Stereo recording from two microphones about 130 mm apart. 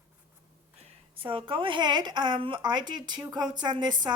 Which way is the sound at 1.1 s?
40° right (ahead or behind).